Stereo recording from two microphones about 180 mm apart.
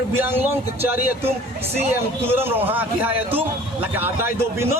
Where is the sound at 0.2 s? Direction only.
10° right (ahead or behind).